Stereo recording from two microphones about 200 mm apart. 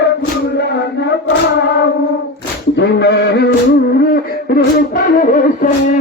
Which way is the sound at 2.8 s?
55° left (ahead or behind).